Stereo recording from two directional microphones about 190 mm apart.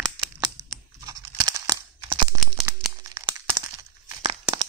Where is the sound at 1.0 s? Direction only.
20° right (ahead or behind).